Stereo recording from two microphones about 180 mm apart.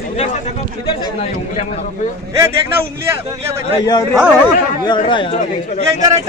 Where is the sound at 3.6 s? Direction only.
25° left (ahead or behind).